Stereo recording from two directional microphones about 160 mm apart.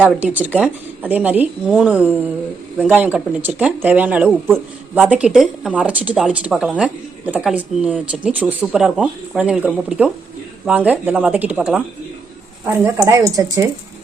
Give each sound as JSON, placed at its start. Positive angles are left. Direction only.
{"t": 0.0, "sound": "speech", "side_deg": -10}
{"t": 13.1, "sound": "speech", "side_deg": -20}